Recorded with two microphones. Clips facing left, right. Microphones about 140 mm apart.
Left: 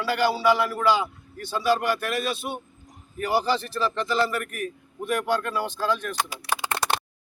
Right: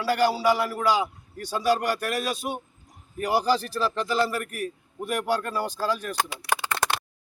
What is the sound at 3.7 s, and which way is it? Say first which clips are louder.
Speech: even; 5° right (ahead or behind).